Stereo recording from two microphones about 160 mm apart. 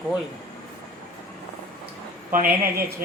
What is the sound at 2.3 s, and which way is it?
Speech, 60° right (ahead or behind).